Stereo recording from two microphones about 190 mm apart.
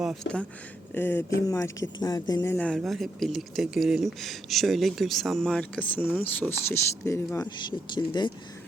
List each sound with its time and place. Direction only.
0.0 s speech: centre (ahead or behind); by 8.3 s 25° left (ahead or behind)